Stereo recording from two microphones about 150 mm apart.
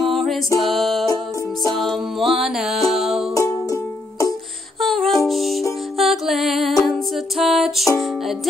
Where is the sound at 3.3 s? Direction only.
20° left (ahead or behind).